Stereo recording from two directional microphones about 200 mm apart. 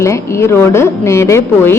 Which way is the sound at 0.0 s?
15° left (ahead or behind).